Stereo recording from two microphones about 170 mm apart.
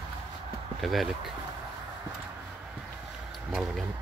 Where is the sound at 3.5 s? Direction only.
5° right (ahead or behind).